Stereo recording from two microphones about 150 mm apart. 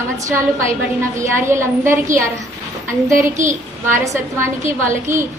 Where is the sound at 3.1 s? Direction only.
55° right (ahead or behind).